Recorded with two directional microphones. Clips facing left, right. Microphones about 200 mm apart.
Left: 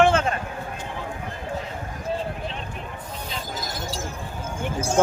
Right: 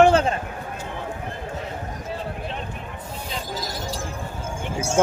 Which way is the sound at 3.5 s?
35° right (ahead or behind).